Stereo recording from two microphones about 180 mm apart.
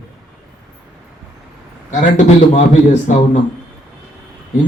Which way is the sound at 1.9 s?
40° left (ahead or behind).